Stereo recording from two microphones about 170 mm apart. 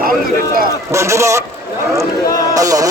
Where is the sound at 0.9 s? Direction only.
15° right (ahead or behind).